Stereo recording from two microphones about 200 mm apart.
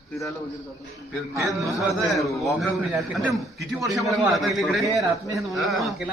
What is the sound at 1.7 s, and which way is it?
A man's voice, centre (ahead or behind).